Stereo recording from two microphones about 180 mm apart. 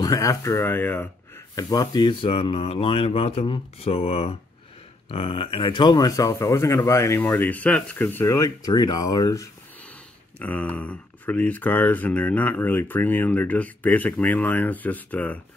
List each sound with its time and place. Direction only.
0.0 s speech: 20° left (ahead or behind)
10.4 s speech: 10° left (ahead or behind)